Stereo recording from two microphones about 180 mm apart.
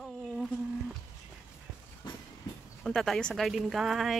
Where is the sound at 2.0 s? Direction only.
25° left (ahead or behind).